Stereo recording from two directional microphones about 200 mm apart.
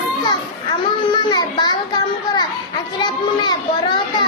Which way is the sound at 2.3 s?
20° left (ahead or behind).